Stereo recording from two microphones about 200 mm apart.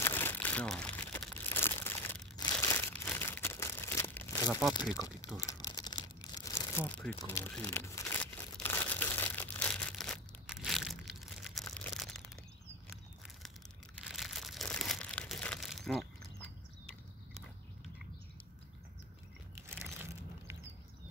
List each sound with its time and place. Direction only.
0.0 s crumpling: 10° left (ahead or behind)
4.9 s speech: 15° left (ahead or behind)
5.5 s crumpling: 20° left (ahead or behind); by 11.6 s centre (ahead or behind)
11.7 s a sound: 5° left (ahead or behind)
13.9 s crumpling: centre (ahead or behind)